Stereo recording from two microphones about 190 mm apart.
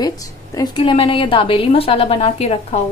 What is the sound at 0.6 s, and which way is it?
A woman's voice, 25° left (ahead or behind).